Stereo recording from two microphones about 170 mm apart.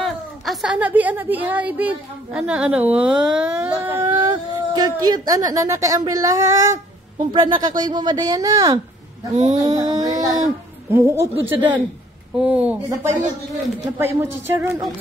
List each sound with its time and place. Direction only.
0.0 s a woman's voice: centre (ahead or behind)
4.7 s a woman's voice: 25° right (ahead or behind)
9.3 s a sound: 40° right (ahead or behind)
9.6 s child singing: 20° right (ahead or behind)
10.9 s speech: 15° right (ahead or behind)
13.9 s speech: 15° right (ahead or behind)